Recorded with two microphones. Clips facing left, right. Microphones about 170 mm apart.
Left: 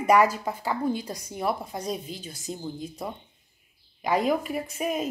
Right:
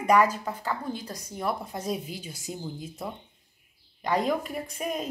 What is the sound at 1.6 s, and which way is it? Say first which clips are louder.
Speech: even; 5° right (ahead or behind).